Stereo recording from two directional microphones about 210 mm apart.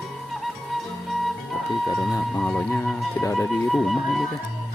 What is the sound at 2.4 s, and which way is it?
Music, centre (ahead or behind).